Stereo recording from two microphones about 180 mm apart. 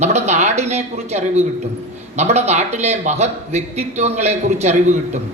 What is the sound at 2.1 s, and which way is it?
A woman's voice, 35° right (ahead or behind).